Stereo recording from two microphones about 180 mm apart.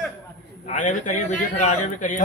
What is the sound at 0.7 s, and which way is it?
A man's voice, 45° left (ahead or behind).